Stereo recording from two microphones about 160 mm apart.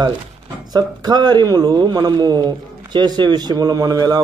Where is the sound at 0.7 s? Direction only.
25° right (ahead or behind).